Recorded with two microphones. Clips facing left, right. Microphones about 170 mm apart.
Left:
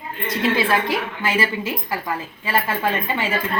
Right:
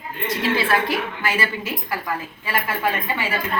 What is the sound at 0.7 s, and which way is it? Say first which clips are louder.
Speech: left 1 dB; 20° left (ahead or behind).